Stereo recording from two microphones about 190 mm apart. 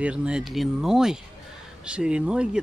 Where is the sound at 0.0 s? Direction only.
5° right (ahead or behind).